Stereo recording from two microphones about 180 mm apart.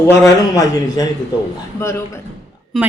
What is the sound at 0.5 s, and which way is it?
Speech, 20° left (ahead or behind).